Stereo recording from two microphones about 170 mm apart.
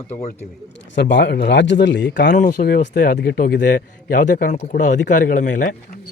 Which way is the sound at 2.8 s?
50° left (ahead or behind).